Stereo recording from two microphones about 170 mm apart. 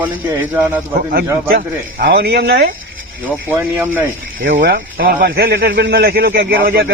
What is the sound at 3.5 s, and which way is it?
Speech, 15° right (ahead or behind).